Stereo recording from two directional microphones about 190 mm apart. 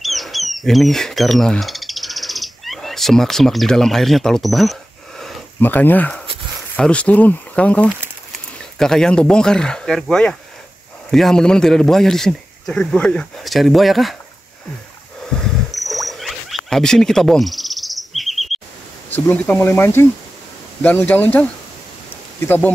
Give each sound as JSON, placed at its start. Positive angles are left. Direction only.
{"t": 0.0, "sound": "bird", "side_deg": 0}
{"t": 5.2, "sound": "a sound", "side_deg": 10}
{"t": 6.8, "sound": "a man's voice", "side_deg": 5}
{"t": 15.4, "sound": "wild animals", "side_deg": 0}
{"t": 19.0, "sound": "speech", "side_deg": 10}